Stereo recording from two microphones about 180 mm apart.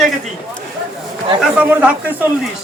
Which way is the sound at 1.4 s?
5° right (ahead or behind).